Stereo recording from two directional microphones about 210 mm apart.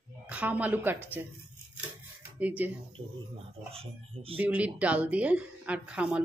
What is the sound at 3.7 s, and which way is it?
Speech, 25° right (ahead or behind).